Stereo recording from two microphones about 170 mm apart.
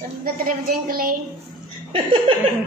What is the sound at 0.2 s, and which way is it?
Speech, 60° right (ahead or behind).